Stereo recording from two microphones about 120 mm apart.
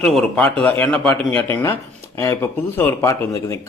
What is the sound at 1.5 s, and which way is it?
A man's voice, 15° left (ahead or behind).